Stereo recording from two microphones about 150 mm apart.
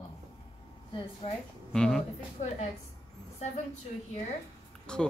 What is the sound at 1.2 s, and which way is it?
Speech, 40° left (ahead or behind).